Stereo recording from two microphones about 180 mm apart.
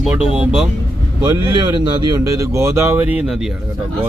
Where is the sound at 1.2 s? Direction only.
20° right (ahead or behind); by 3.5 s 5° right (ahead or behind).